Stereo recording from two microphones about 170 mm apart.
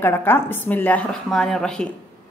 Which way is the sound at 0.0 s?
10° left (ahead or behind).